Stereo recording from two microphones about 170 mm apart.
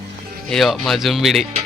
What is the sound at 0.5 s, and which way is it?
Speech, centre (ahead or behind).